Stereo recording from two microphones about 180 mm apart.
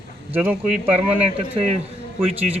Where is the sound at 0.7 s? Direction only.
35° right (ahead or behind).